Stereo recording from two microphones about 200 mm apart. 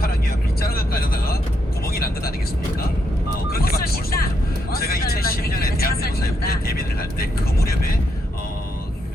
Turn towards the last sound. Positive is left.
turn(degrees=50)  # may be behind; listen again after turning